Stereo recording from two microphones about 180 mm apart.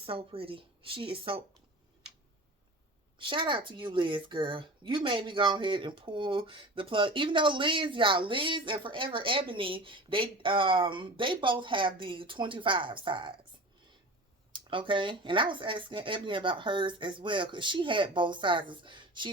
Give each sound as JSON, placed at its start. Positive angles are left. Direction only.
{"t": 0.0, "sound": "speech", "side_deg": -30}
{"t": 3.2, "sound": "speech", "side_deg": -30}
{"t": 14.5, "sound": "speech", "side_deg": -25}